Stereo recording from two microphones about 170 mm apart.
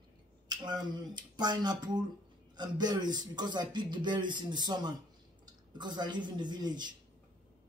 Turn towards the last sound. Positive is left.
turn(degrees=-25)  # may be behind; listen again after turning